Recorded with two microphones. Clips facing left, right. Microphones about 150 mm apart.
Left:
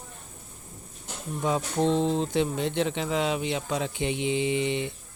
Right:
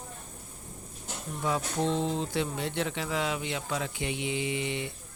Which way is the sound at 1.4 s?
20° left (ahead or behind).